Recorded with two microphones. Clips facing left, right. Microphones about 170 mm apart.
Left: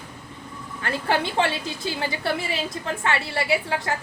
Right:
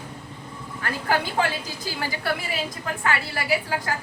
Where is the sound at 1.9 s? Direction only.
25° left (ahead or behind).